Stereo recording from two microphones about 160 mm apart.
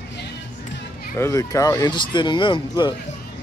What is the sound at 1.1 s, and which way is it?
Speech, 20° left (ahead or behind).